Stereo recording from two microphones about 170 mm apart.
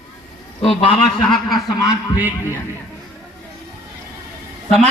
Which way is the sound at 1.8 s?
20° left (ahead or behind).